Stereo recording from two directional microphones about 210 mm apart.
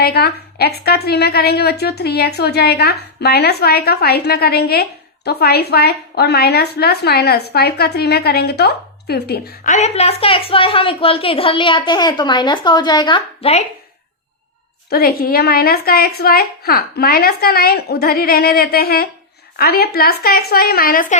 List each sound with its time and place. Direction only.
0.0 s a woman's voice: 50° left (ahead or behind); by 13.7 s 30° left (ahead or behind)
14.8 s a woman's voice: 45° left (ahead or behind)